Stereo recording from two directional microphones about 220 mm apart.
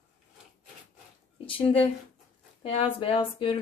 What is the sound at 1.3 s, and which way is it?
A woman's voice, 25° left (ahead or behind).